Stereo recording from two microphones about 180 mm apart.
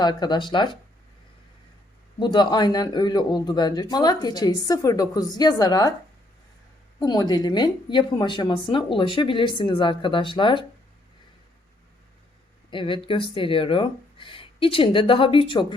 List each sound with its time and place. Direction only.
0.0 s a man's voice: 25° left (ahead or behind)
2.1 s a man's voice: 25° left (ahead or behind)
7.0 s a man's voice: 20° left (ahead or behind)
12.7 s a man's voice: 30° left (ahead or behind)